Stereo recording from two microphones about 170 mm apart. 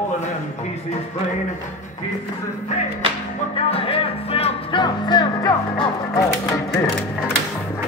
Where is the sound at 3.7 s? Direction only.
35° left (ahead or behind).